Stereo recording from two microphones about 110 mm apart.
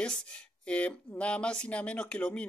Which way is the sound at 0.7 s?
10° left (ahead or behind).